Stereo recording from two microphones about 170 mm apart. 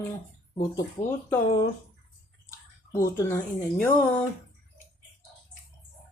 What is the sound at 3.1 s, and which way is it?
Speech, 15° left (ahead or behind).